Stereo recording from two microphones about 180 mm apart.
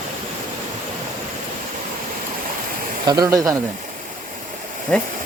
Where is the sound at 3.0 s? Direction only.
20° right (ahead or behind).